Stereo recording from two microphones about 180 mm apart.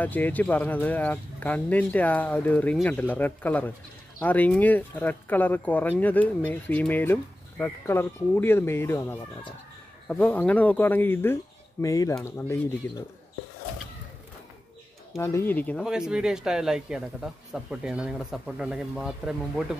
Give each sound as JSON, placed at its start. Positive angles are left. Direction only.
{"t": 0.0, "sound": "speech", "side_deg": 10}
{"t": 15.1, "sound": "speech", "side_deg": 15}
{"t": 15.9, "sound": "speech", "side_deg": -5}